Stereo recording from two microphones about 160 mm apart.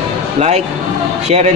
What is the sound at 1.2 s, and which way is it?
Speech, 45° right (ahead or behind).